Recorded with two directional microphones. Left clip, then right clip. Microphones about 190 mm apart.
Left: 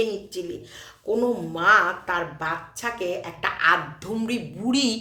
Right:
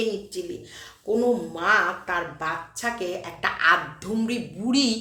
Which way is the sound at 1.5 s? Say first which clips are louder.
Left 6 dB; 10° left (ahead or behind).